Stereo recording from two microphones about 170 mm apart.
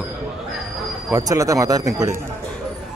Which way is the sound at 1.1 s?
20° right (ahead or behind).